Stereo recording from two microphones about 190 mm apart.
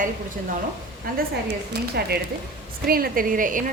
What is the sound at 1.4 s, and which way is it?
A woman's voice, 60° right (ahead or behind).